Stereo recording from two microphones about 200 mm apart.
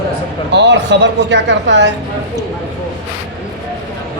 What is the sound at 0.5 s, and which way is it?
Speech, 60° right (ahead or behind).